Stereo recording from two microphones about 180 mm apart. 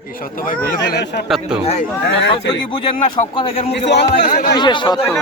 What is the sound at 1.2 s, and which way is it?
Speech, centre (ahead or behind).